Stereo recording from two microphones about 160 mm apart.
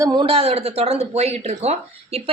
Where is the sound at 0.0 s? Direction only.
30° right (ahead or behind).